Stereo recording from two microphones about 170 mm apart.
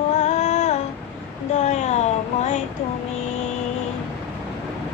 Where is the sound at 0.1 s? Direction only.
45° left (ahead or behind).